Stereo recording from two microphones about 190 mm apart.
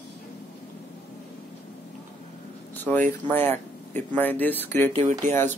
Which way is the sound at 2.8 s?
10° left (ahead or behind).